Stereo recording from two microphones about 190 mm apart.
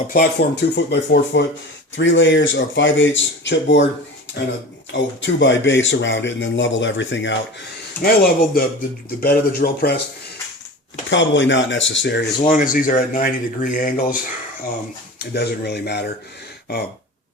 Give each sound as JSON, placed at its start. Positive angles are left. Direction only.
{"t": 0.1, "sound": "speech", "side_deg": 50}
{"t": 4.9, "sound": "speech", "side_deg": 70}
{"t": 8.0, "sound": "speech", "side_deg": 50}
{"t": 11.1, "sound": "speech", "side_deg": 75}
{"t": 12.5, "sound": "speech", "side_deg": 45}
{"t": 15.2, "sound": "speech", "side_deg": 60}